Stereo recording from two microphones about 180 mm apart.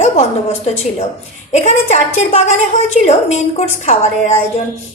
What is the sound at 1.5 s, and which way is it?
A woman's voice, 40° left (ahead or behind).